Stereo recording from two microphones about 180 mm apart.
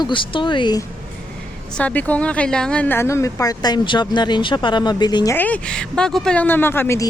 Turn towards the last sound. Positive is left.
turn(degrees=15)  # may be behind; listen again after turning